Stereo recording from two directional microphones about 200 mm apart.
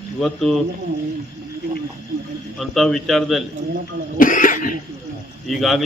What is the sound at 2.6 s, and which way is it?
Speech, centre (ahead or behind).